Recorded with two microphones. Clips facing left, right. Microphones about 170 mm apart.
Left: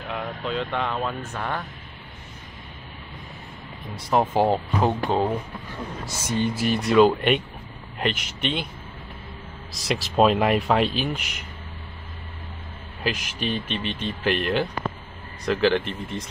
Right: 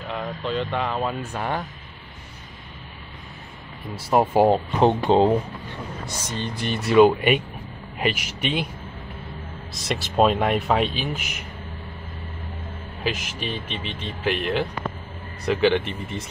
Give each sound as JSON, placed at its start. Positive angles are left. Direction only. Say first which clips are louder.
{"t": 0.5, "sound": "speech", "louder": "right 1 dB", "side_deg": 0}
{"t": 3.9, "sound": "speech", "louder": "right 2 dB", "side_deg": -5}
{"t": 4.7, "sound": "speech", "louder": "right 5 dB", "side_deg": -25}
{"t": 6.0, "sound": "speech", "louder": "left 7 dB", "side_deg": 10}
{"t": 9.8, "sound": "speech", "louder": "even", "side_deg": 0}
{"t": 13.0, "sound": "speech", "louder": "left 1 dB", "side_deg": 0}